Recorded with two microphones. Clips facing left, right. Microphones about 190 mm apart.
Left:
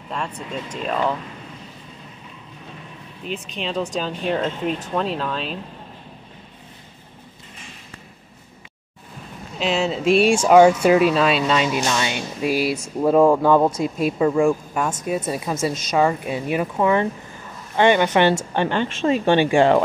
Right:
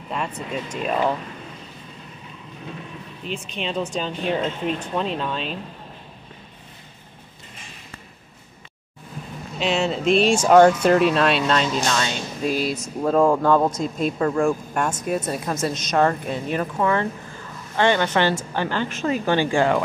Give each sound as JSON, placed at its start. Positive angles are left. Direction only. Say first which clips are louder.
{"t": 0.1, "sound": "speech", "louder": "right 1 dB", "side_deg": -5}
{"t": 3.3, "sound": "speech", "louder": "left 1 dB", "side_deg": 0}
{"t": 9.6, "sound": "speech", "louder": "left 1 dB", "side_deg": 0}